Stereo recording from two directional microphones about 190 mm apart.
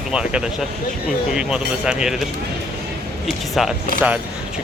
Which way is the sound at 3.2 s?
Centre (ahead or behind).